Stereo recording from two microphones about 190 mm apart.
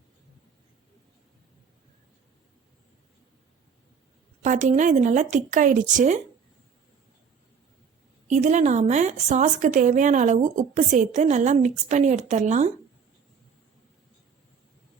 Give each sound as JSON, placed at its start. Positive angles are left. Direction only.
{"t": 4.4, "sound": "a woman's voice", "side_deg": -40}
{"t": 8.3, "sound": "a woman's voice", "side_deg": -40}